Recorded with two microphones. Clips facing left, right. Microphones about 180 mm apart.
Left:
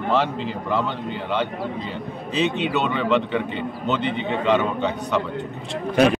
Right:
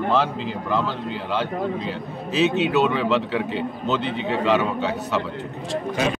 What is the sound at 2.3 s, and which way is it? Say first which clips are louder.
A man's voice: right 3 dB; 5° right (ahead or behind).